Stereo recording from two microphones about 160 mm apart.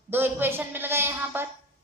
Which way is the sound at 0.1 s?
15° right (ahead or behind).